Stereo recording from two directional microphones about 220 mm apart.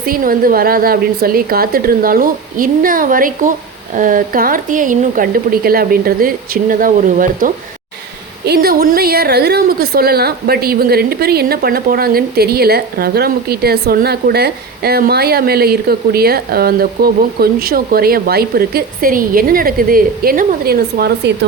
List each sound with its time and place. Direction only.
0.0 s a woman's voice: 40° right (ahead or behind)